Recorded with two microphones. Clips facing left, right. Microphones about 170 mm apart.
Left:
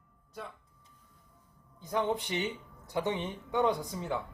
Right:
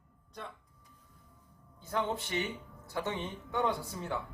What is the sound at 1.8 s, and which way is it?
Speech, 15° left (ahead or behind).